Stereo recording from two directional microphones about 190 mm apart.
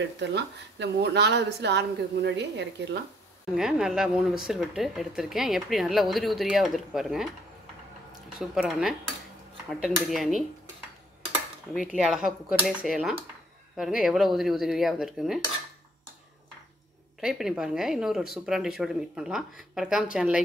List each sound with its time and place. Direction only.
0.2 s a woman's voice: 65° right (ahead or behind)
3.5 s speech: 5° right (ahead or behind)
8.4 s speech: centre (ahead or behind)
11.7 s speech: 5° right (ahead or behind)
17.2 s speech: 5° right (ahead or behind)